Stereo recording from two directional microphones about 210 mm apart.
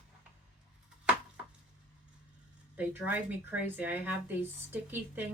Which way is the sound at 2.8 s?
10° right (ahead or behind).